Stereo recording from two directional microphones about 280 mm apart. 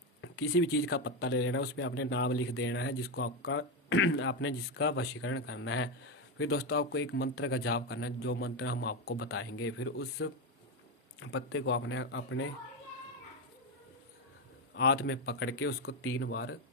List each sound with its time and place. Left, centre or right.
0.2 s a man's voice: left
14.8 s a man's voice: left